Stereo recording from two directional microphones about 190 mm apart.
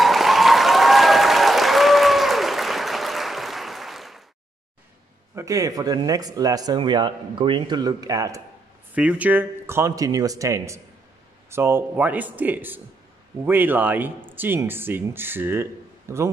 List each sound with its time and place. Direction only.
0.0 s applause: centre (ahead or behind)
5.3 s speech: 15° right (ahead or behind)